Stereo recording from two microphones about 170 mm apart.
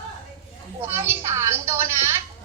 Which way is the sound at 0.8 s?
15° right (ahead or behind).